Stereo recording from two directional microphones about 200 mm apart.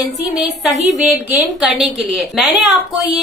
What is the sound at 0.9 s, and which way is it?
A woman's voice, 5° right (ahead or behind).